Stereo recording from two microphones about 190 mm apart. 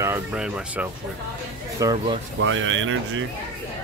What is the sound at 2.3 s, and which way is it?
Speech, 90° right.